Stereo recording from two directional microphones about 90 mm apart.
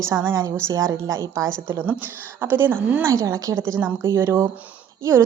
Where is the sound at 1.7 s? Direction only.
25° right (ahead or behind).